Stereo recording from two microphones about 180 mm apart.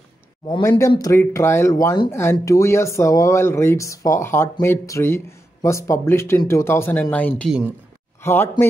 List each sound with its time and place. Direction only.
0.6 s speech: 15° left (ahead or behind)